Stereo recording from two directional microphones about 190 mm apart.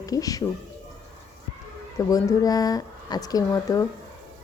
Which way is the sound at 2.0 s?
20° left (ahead or behind).